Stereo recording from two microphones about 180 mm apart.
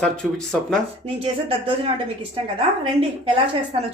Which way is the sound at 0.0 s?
5° left (ahead or behind).